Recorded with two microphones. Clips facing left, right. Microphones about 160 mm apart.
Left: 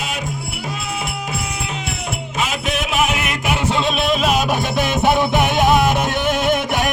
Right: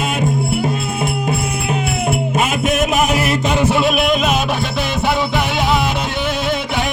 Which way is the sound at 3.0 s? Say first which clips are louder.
Right 4 dB; 35° right (ahead or behind).